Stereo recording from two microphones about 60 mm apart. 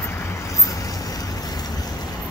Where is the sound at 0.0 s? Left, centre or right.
Left.